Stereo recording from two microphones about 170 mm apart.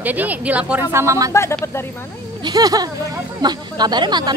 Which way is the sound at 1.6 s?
15° left (ahead or behind).